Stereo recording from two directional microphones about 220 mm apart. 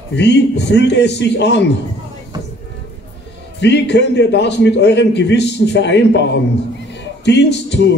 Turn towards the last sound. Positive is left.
turn(degrees=50)  # may be behind; listen again after turning